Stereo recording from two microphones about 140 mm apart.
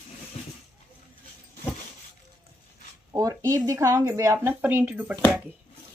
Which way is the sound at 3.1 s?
25° right (ahead or behind).